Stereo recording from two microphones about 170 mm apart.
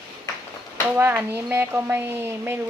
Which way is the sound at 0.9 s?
15° right (ahead or behind).